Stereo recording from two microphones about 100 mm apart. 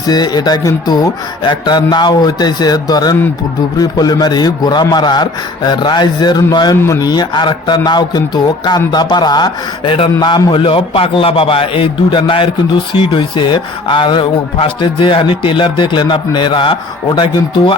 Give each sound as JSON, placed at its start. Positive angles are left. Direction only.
{"t": 0.1, "sound": "a man's voice", "side_deg": 45}
{"t": 6.7, "sound": "a man's voice", "side_deg": 25}
{"t": 7.0, "sound": "speech", "side_deg": 45}